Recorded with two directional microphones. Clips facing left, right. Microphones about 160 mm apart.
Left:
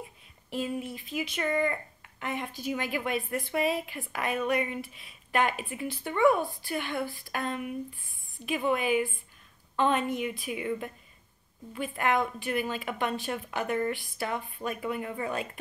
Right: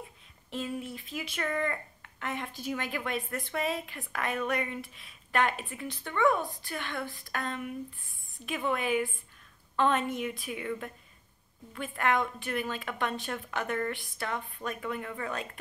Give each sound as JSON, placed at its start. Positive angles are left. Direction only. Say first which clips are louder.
{"t": 0.5, "sound": "a woman's voice", "louder": "left 3 dB", "side_deg": 5}
{"t": 8.6, "sound": "speech", "louder": "left 2 dB", "side_deg": 5}
{"t": 12.0, "sound": "a woman's voice", "louder": "left 1 dB", "side_deg": 5}